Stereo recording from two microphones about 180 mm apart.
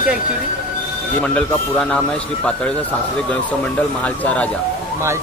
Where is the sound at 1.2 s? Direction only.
5° left (ahead or behind).